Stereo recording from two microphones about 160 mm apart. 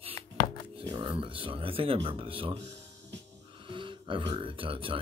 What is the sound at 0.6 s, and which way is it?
Speech, 35° right (ahead or behind).